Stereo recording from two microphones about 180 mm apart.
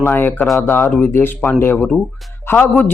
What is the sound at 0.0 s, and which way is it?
Speech, 10° left (ahead or behind).